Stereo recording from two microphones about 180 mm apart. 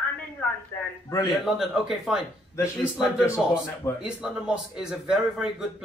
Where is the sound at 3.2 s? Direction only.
15° left (ahead or behind).